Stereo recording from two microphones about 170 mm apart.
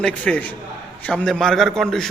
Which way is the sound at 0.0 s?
10° left (ahead or behind).